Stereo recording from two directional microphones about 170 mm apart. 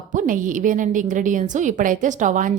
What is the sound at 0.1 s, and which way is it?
A woman's voice, 50° right (ahead or behind).